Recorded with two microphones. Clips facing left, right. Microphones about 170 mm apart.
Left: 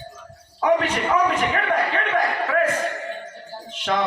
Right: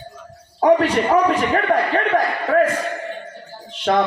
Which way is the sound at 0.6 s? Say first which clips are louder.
Right 5 dB; 40° right (ahead or behind).